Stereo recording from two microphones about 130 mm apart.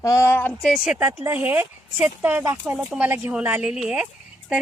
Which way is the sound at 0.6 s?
5° right (ahead or behind).